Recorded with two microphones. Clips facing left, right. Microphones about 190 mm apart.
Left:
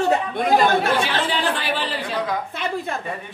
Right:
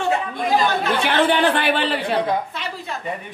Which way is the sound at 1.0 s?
60° right (ahead or behind).